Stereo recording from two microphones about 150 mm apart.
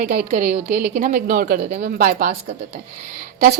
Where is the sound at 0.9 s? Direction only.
65° right (ahead or behind).